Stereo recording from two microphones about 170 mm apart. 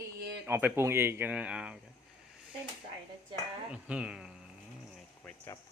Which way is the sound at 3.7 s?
5° right (ahead or behind).